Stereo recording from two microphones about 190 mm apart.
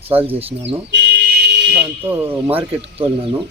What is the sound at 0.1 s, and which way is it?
Speech, 10° right (ahead or behind).